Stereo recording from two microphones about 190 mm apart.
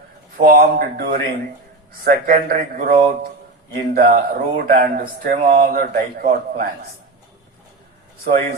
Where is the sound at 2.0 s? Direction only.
50° right (ahead or behind).